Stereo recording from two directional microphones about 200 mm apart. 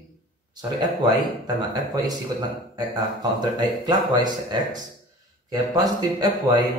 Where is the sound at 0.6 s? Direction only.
20° right (ahead or behind).